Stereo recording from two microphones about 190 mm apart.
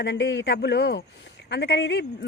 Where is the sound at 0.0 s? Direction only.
65° left (ahead or behind).